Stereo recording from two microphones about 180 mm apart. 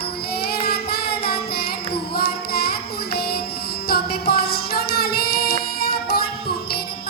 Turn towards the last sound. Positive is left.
turn(degrees=60)  # may be behind; listen again after turning